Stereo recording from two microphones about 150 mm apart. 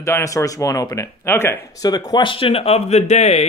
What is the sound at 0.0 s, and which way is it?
Speech, 20° left (ahead or behind).